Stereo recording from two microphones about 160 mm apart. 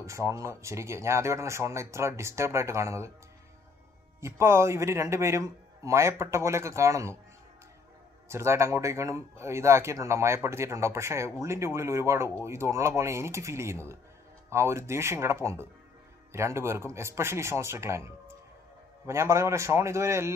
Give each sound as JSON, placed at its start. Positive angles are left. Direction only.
{"t": 0.0, "sound": "speech", "side_deg": -20}
{"t": 4.2, "sound": "speech", "side_deg": -15}
{"t": 8.3, "sound": "speech", "side_deg": -15}